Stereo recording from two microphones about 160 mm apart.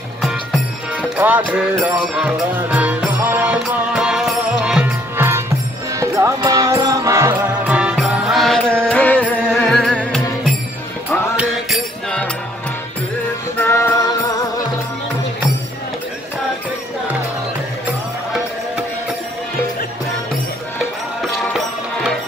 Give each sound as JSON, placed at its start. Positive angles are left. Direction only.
{"t": 0.2, "sound": "music", "side_deg": -5}
{"t": 13.6, "sound": "music", "side_deg": 15}